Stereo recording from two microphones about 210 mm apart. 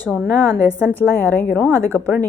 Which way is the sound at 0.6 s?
10° left (ahead or behind).